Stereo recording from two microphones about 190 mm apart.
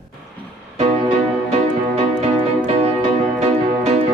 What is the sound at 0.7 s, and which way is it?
Music, 35° right (ahead or behind).